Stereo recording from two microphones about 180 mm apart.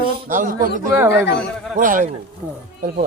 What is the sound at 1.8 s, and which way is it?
Speech, 45° right (ahead or behind).